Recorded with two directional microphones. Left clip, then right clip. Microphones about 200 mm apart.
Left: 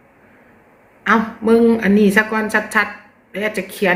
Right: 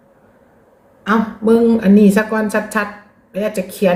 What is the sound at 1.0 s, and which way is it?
Speech, 15° right (ahead or behind).